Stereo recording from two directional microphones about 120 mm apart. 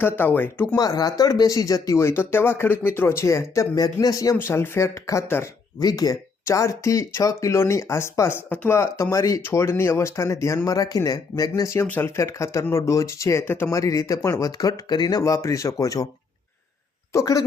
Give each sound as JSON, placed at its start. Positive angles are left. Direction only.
{"t": 0.0, "sound": "speech", "side_deg": 15}
{"t": 0.8, "sound": "speech", "side_deg": 30}
{"t": 17.1, "sound": "a woman's voice", "side_deg": 25}